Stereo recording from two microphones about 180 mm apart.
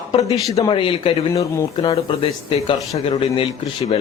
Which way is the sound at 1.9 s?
30° left (ahead or behind).